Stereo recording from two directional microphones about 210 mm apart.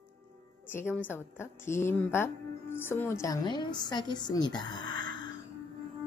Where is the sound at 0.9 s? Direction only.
10° left (ahead or behind).